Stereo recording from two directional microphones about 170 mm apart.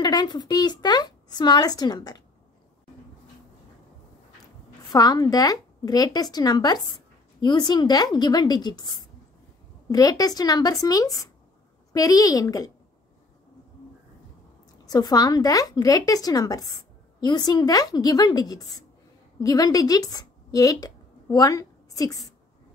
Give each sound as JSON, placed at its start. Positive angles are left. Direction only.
{"t": 0.0, "sound": "a woman's voice", "side_deg": 25}
{"t": 4.9, "sound": "a woman's voice", "side_deg": 25}
{"t": 14.9, "sound": "a woman's voice", "side_deg": 25}